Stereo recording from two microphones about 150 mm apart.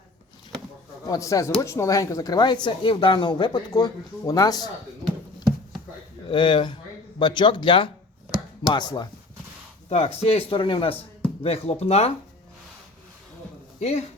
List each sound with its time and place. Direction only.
1.0 s speech: 25° left (ahead or behind)
6.2 s speech: 30° left (ahead or behind)
9.9 s speech: 40° left (ahead or behind)
13.7 s speech: 45° left (ahead or behind)